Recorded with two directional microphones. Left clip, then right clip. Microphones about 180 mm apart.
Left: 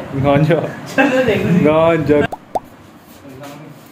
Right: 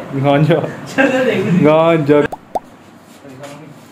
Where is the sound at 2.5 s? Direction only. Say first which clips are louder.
Even; centre (ahead or behind).